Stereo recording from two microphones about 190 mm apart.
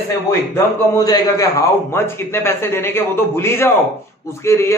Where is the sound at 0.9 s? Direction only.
20° left (ahead or behind).